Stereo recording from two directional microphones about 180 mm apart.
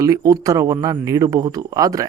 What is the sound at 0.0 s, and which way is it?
Speech, 20° right (ahead or behind).